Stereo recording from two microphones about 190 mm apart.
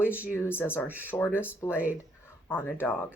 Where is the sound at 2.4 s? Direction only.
10° left (ahead or behind).